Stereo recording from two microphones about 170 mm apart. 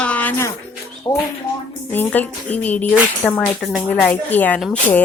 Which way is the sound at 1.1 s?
25° left (ahead or behind).